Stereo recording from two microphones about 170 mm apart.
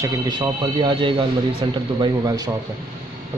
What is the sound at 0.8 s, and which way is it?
Speech, 30° right (ahead or behind).